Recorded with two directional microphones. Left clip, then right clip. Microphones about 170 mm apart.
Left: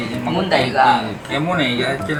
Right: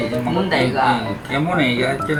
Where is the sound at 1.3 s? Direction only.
5° left (ahead or behind).